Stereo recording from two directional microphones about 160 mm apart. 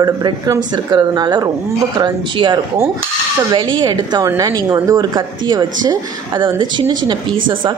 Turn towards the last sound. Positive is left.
turn(degrees=-25)  # may be behind; listen again after turning